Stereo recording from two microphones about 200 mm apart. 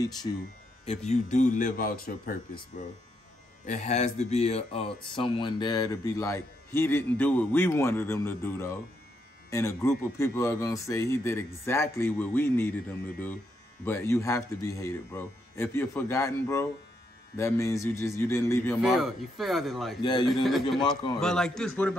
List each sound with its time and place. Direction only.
0.3 s a man's voice: 20° left (ahead or behind)
0.8 s speech: 35° left (ahead or behind)
3.6 s speech: 35° left (ahead or behind); by 12.7 s 10° left (ahead or behind)
13.8 s speech: 10° left (ahead or behind)
18.8 s speech: centre (ahead or behind)
20.0 s a man's voice: 20° left (ahead or behind)
21.2 s speech: 5° left (ahead or behind)